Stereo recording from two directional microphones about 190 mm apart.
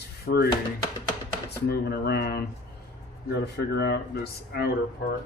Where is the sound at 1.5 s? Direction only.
60° left (ahead or behind).